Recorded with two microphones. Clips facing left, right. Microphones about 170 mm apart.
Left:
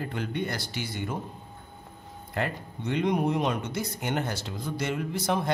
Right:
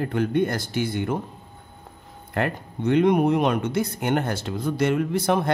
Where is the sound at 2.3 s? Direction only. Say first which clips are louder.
Right 5 dB; 60° right (ahead or behind).